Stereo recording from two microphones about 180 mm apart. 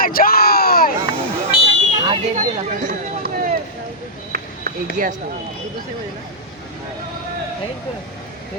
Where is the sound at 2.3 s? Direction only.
45° right (ahead or behind).